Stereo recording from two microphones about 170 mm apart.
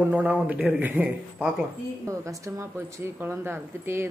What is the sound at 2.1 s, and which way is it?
Speech, 20° right (ahead or behind).